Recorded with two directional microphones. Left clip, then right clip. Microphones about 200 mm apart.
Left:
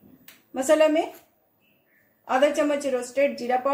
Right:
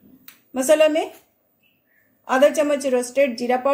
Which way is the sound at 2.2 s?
35° right (ahead or behind).